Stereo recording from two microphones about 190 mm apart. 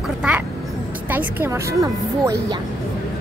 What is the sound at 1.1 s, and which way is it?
A woman's voice, 15° right (ahead or behind).